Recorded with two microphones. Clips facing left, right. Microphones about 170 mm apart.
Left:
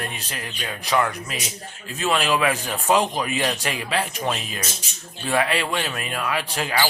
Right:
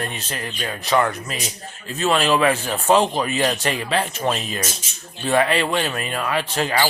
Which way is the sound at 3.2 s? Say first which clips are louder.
Right 3 dB; 10° left (ahead or behind).